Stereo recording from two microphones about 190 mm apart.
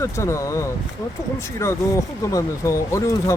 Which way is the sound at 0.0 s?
15° left (ahead or behind).